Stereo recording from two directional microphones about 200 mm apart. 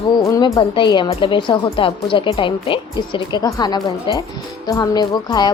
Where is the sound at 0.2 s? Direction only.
15° left (ahead or behind).